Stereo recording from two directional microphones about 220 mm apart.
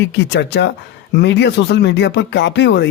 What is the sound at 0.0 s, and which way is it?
Speech, 55° left (ahead or behind).